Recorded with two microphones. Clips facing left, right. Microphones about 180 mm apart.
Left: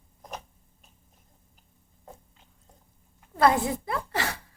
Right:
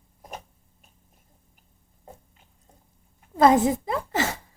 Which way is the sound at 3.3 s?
20° right (ahead or behind).